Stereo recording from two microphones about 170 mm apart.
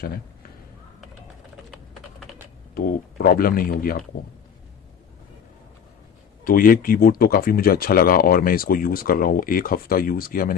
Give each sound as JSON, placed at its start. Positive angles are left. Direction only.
{"t": 2.7, "sound": "speech", "side_deg": 60}
{"t": 6.4, "sound": "speech", "side_deg": 55}